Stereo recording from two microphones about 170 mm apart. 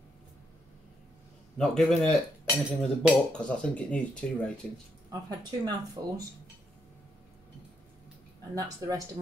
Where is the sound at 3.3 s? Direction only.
5° left (ahead or behind).